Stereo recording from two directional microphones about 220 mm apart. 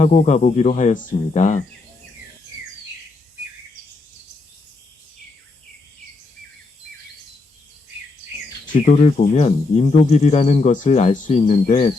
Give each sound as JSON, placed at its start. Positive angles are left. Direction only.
{"t": 0.0, "sound": "speech", "side_deg": 30}
{"t": 8.7, "sound": "speech", "side_deg": 30}